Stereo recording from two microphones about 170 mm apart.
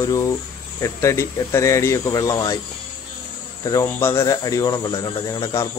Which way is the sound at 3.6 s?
20° left (ahead or behind).